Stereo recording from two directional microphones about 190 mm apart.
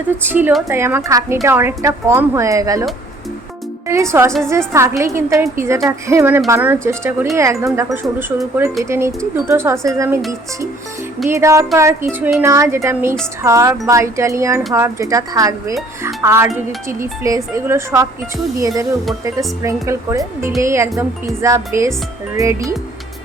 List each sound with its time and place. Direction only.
0.2 s a woman's voice: 10° right (ahead or behind)
3.8 s a woman's voice: 15° right (ahead or behind)
7.9 s speech: centre (ahead or behind)
8.8 s a woman's voice: 15° right (ahead or behind)
11.3 s a woman's voice: 15° right (ahead or behind)
19.2 s a woman's voice: 15° right (ahead or behind)